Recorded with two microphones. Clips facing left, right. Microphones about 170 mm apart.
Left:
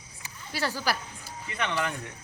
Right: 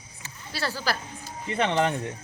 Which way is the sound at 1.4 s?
30° right (ahead or behind).